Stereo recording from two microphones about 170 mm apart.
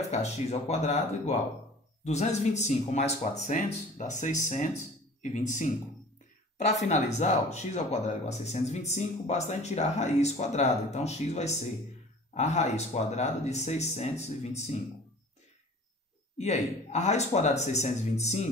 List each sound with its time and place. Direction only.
0.1 s speech: 40° left (ahead or behind)
16.3 s speech: 40° left (ahead or behind)